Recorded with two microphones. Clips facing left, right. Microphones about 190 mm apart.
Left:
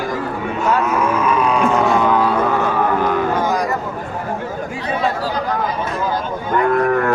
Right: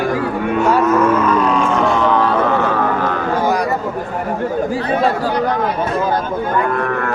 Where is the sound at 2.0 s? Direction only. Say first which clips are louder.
Right 1 dB; 10° left (ahead or behind).